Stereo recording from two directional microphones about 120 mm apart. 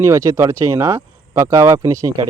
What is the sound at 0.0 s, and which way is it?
A man's voice, 25° right (ahead or behind).